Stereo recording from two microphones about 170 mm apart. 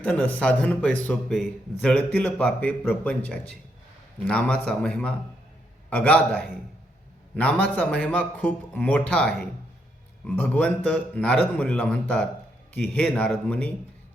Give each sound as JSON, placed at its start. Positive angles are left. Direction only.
{"t": 0.0, "sound": "a man's voice", "side_deg": 10}